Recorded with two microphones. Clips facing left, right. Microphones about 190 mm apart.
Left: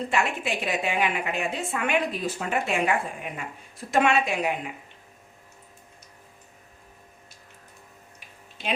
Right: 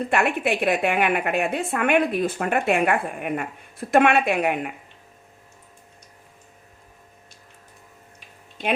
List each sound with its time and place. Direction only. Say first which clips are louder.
0.1 s a woman's voice: right 7 dB; 60° right (ahead or behind)